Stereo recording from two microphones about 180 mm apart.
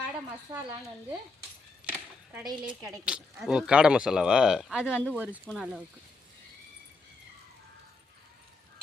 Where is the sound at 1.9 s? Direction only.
10° right (ahead or behind).